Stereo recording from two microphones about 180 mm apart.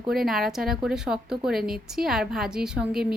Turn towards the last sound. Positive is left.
turn(degrees=-5)  # may be behind; listen again after turning